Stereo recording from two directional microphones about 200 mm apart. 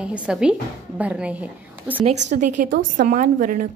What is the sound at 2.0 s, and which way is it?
A woman's voice, 35° right (ahead or behind).